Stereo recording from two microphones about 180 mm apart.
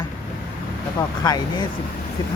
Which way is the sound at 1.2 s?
20° left (ahead or behind).